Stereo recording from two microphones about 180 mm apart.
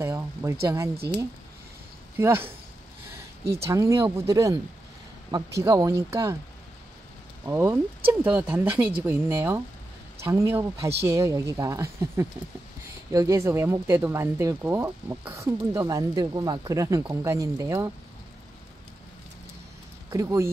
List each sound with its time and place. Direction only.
0.0 s speech: 15° right (ahead or behind)
2.1 s speech: 15° right (ahead or behind)
3.6 s speech: 15° right (ahead or behind)
7.4 s speech: 15° right (ahead or behind)
20.1 s speech: 20° right (ahead or behind)